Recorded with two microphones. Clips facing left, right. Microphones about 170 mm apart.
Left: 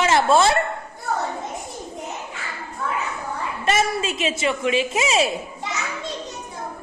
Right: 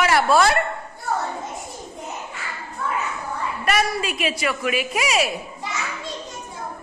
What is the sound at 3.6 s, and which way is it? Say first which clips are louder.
A woman's voice: left 1 dB; 25° left (ahead or behind).